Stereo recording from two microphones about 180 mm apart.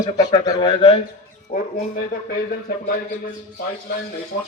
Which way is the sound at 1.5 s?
50° left (ahead or behind).